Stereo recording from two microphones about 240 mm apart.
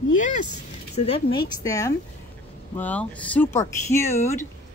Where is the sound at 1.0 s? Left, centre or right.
Left.